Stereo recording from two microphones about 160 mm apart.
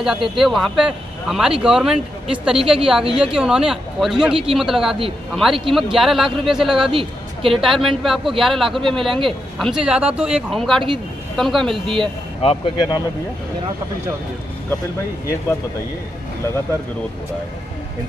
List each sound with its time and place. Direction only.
0.0 s speech: centre (ahead or behind)
6.9 s a woman's voice: 35° right (ahead or behind)
7.5 s speech: centre (ahead or behind)
12.4 s speech: 35° left (ahead or behind)